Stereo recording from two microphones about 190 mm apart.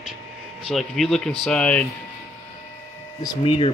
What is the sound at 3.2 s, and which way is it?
Speech, 20° left (ahead or behind).